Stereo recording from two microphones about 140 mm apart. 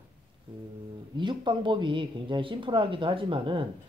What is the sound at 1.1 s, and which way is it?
Speech, 35° right (ahead or behind).